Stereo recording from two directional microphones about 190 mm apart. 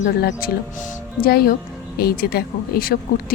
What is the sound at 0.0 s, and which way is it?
A woman's voice, 60° left (ahead or behind).